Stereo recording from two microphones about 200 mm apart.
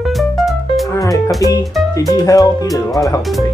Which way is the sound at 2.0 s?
15° left (ahead or behind).